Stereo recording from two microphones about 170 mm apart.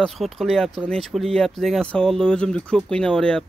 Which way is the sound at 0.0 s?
Centre (ahead or behind).